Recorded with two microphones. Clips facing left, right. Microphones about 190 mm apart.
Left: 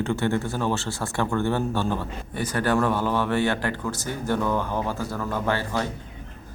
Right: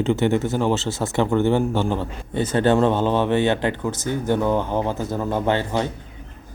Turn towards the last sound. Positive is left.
turn(degrees=-20)  # may be behind; listen again after turning